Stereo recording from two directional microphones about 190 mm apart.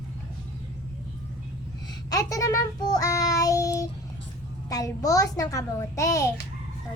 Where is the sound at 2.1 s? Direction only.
20° left (ahead or behind).